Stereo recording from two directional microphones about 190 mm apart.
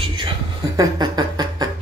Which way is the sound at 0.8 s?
20° right (ahead or behind).